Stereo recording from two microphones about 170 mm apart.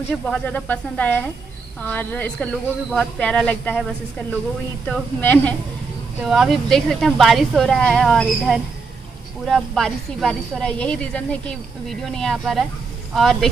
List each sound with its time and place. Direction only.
0.3 s speech: 10° left (ahead or behind)
4.8 s speech: 10° left (ahead or behind)
6.2 s speech: centre (ahead or behind)